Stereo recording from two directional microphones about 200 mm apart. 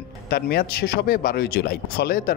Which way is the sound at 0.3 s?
50° left (ahead or behind).